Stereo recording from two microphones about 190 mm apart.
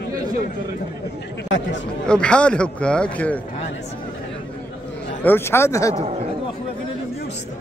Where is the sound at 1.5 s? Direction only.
75° left (ahead or behind).